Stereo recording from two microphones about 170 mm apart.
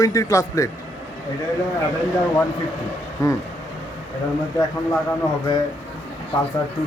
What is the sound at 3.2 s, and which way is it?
Speech, 20° left (ahead or behind).